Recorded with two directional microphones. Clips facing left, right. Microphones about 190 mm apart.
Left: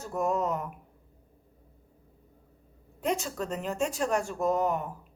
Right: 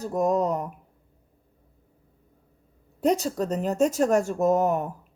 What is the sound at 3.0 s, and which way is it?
A woman's voice, 35° right (ahead or behind).